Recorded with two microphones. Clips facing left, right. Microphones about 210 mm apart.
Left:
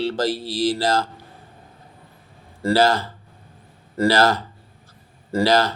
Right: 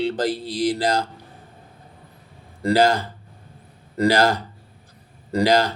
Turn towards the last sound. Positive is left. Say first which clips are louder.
# even
turn(degrees=-15)  # may be behind; listen again after turning